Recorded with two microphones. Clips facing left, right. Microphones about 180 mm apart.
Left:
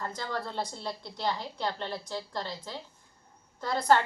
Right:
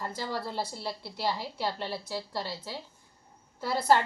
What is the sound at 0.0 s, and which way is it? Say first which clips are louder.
A woman's voice: right 1 dB; 10° right (ahead or behind).